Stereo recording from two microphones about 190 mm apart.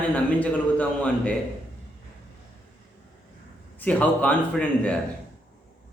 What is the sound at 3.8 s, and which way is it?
Speech, 5° left (ahead or behind).